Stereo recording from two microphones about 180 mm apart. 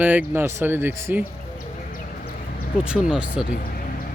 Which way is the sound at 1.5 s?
55° left (ahead or behind).